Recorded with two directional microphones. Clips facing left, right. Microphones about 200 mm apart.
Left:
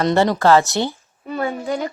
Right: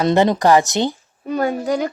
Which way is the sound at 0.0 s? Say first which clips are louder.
Right 1 dB; 15° right (ahead or behind).